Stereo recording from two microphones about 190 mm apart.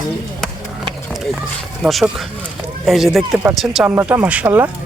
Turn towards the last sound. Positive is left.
turn(degrees=-10)  # may be behind; listen again after turning